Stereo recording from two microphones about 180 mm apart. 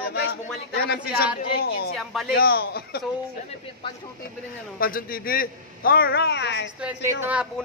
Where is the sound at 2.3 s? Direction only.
60° left (ahead or behind).